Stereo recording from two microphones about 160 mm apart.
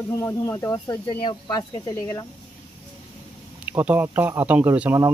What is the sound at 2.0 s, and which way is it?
Speech, 20° left (ahead or behind).